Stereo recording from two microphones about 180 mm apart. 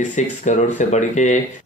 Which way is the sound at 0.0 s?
45° left (ahead or behind).